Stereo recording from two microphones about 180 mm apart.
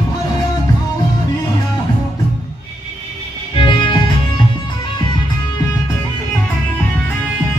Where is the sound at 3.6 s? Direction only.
25° left (ahead or behind).